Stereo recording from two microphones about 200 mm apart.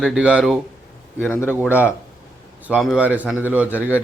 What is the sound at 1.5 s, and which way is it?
A man's voice, 10° right (ahead or behind).